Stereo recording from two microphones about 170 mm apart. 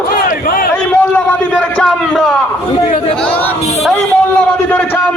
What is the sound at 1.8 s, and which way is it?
Speech, centre (ahead or behind).